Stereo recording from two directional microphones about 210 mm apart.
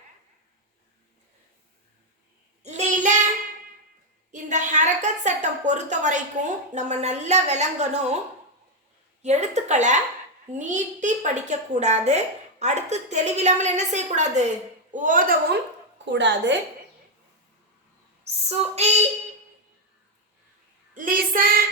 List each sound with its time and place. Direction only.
2.6 s child singing: 35° right (ahead or behind)
4.3 s a sound: 35° right (ahead or behind)
6.7 s a woman's voice: 35° right (ahead or behind)
9.2 s a woman's voice: 35° right (ahead or behind)
16.0 s a woman's voice: 55° right (ahead or behind)
18.4 s a woman's voice: 30° right (ahead or behind)
20.9 s a woman's voice: 40° right (ahead or behind)